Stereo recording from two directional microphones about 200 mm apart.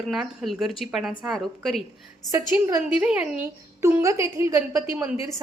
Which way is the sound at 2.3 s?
15° right (ahead or behind).